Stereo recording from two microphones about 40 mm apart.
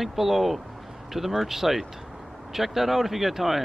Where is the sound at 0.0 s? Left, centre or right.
Centre.